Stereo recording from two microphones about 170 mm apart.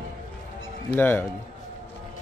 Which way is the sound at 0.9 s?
10° left (ahead or behind).